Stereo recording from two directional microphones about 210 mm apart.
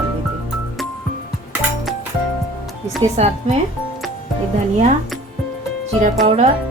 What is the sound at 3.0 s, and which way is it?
Speech, 30° right (ahead or behind).